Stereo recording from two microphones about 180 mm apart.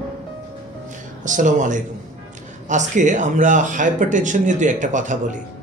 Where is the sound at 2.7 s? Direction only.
45° right (ahead or behind).